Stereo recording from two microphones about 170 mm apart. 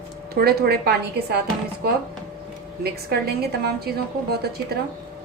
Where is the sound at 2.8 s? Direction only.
65° right (ahead or behind).